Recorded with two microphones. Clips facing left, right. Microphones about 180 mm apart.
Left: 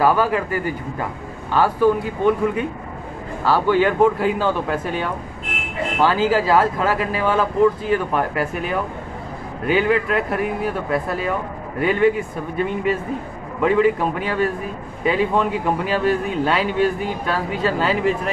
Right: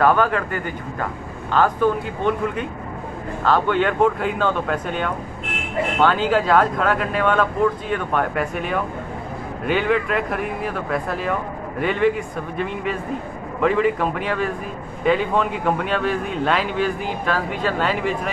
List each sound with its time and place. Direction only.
0.0 s a man's voice: 5° left (ahead or behind)